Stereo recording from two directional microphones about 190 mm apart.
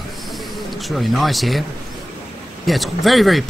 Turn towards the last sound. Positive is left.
turn(degrees=0)  # may be behind; listen again after turning